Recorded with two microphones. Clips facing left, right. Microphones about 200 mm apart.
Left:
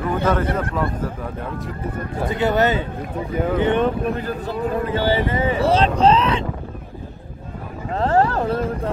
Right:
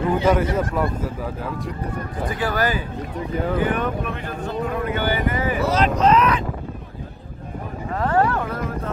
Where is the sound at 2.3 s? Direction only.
25° left (ahead or behind).